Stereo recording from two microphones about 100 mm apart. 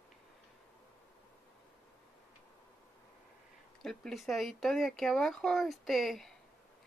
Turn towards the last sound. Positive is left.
turn(degrees=0)  # may be behind; listen again after turning